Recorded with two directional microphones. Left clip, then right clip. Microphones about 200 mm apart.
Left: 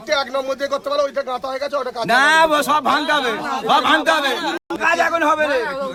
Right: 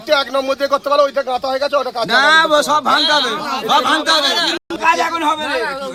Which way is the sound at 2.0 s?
30° left (ahead or behind).